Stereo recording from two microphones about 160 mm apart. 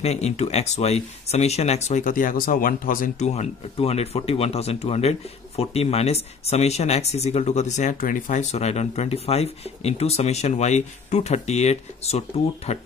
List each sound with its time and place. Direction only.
0.0 s speech: 40° left (ahead or behind)